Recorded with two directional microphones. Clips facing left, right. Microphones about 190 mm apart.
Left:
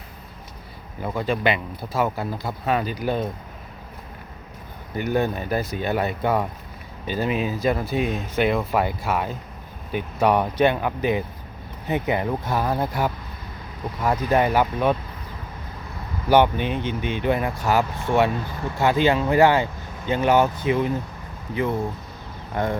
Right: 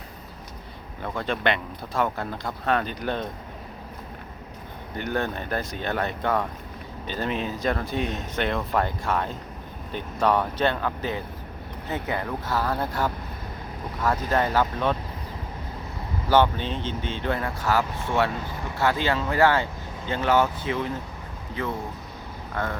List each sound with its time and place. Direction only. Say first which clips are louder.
1.0 s speech: left 3 dB; 5° left (ahead or behind)
4.9 s speech: left 5 dB; 10° left (ahead or behind)
16.3 s speech: left 3 dB; 15° left (ahead or behind)